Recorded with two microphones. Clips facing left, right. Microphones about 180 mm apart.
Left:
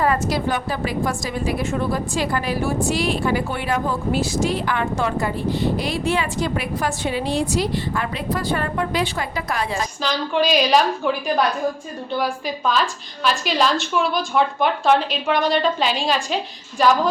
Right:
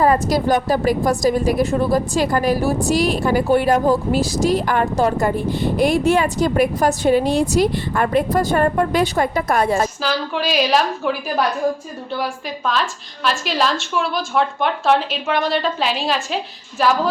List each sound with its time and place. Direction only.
0.0 s a woman's voice: 40° right (ahead or behind)
10.0 s a woman's voice: 5° right (ahead or behind)